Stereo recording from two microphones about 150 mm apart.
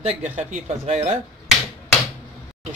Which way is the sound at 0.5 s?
50° right (ahead or behind).